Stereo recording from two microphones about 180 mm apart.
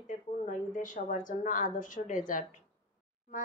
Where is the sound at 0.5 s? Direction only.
45° left (ahead or behind).